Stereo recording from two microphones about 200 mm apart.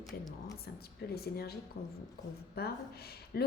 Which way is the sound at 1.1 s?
50° left (ahead or behind).